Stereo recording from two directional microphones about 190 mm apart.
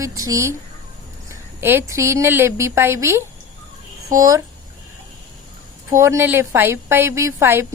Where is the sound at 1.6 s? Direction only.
10° right (ahead or behind).